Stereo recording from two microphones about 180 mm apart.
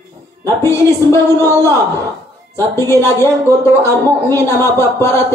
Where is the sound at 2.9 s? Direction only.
15° left (ahead or behind).